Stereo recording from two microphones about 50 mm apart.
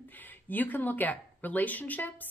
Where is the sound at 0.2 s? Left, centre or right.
Left.